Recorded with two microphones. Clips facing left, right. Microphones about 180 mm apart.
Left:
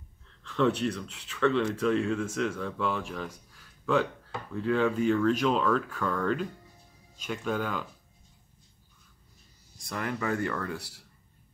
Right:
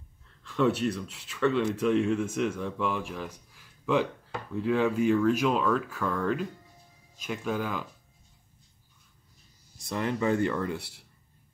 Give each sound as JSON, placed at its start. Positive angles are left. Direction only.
{"t": 0.4, "sound": "speech", "side_deg": -10}
{"t": 9.8, "sound": "speech", "side_deg": -25}